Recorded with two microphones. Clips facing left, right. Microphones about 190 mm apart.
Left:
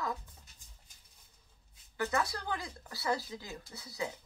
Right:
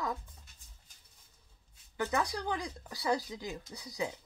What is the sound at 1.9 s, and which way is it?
Speech, 15° right (ahead or behind).